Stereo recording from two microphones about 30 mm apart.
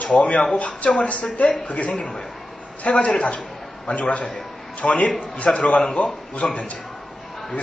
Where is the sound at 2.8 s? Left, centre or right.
Left.